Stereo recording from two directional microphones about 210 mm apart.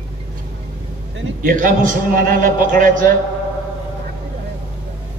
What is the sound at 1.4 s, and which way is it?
A man's voice, 40° right (ahead or behind).